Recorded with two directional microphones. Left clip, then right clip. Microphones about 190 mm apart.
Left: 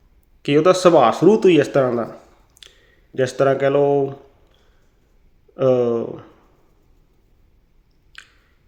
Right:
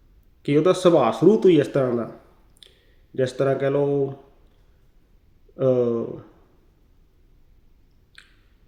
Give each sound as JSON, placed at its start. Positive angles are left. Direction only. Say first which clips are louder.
{"t": 0.4, "sound": "speech", "louder": "left 4 dB", "side_deg": -15}
{"t": 2.6, "sound": "a sound", "louder": "left 5 dB", "side_deg": -15}
{"t": 3.2, "sound": "speech", "louder": "left 5 dB", "side_deg": -15}
{"t": 5.5, "sound": "speech", "louder": "left 4 dB", "side_deg": -15}